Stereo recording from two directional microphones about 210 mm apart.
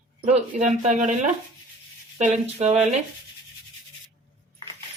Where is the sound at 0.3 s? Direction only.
35° right (ahead or behind).